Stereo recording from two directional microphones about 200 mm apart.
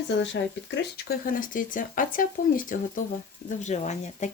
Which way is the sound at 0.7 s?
55° left (ahead or behind).